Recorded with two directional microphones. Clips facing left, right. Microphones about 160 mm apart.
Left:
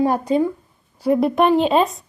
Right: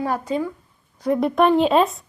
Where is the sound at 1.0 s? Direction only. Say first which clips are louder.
Left 2 dB; 5° left (ahead or behind).